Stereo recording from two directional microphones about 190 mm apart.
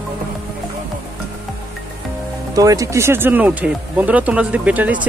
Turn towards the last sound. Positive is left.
turn(degrees=-10)  # may be behind; listen again after turning